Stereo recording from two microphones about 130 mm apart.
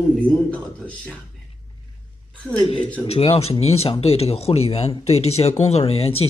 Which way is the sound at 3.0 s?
50° left (ahead or behind).